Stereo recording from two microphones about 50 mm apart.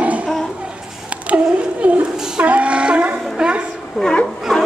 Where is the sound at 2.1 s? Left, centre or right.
Centre.